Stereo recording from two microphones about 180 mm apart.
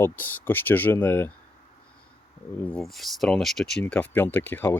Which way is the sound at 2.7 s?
Centre (ahead or behind).